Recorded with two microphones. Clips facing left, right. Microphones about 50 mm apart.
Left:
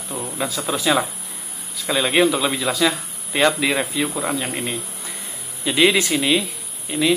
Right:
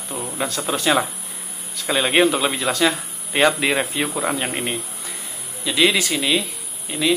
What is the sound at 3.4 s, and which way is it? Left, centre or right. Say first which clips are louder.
Speech: right 1 dB; centre.